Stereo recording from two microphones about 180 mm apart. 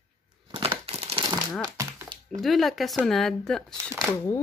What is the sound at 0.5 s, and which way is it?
Crumpling, 30° right (ahead or behind).